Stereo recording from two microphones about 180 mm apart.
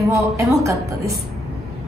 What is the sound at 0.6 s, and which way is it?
Speech, 15° right (ahead or behind).